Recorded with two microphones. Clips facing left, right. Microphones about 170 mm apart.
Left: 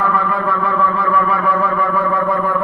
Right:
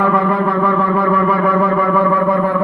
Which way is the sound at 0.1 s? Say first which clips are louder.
Right 4 dB; 20° right (ahead or behind).